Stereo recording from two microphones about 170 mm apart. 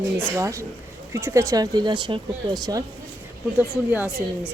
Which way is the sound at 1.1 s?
15° right (ahead or behind).